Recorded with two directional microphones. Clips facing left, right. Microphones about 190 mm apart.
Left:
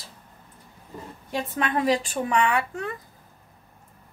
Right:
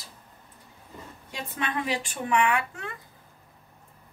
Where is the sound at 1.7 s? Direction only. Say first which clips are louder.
Left 10 dB; 35° left (ahead or behind).